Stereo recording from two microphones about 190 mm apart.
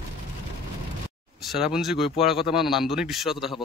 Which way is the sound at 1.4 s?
Centre (ahead or behind).